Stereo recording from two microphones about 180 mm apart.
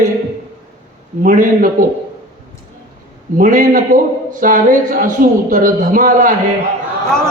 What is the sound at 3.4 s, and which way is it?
Speech, 50° right (ahead or behind).